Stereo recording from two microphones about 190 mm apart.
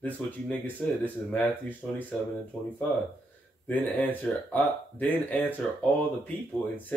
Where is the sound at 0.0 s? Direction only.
10° left (ahead or behind).